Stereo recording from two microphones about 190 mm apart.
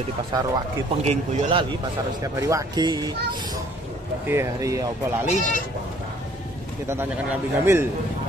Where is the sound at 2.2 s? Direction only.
15° right (ahead or behind).